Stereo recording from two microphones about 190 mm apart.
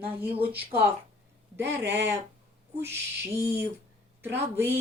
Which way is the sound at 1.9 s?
10° right (ahead or behind).